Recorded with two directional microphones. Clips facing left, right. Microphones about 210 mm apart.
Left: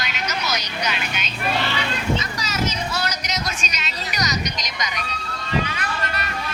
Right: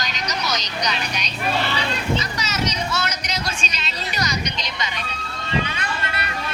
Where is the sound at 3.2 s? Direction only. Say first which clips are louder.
Even; 30° right (ahead or behind).